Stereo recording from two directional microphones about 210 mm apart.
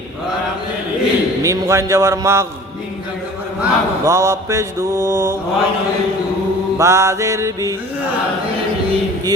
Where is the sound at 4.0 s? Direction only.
15° right (ahead or behind).